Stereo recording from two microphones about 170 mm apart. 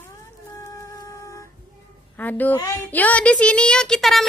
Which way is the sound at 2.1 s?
10° left (ahead or behind).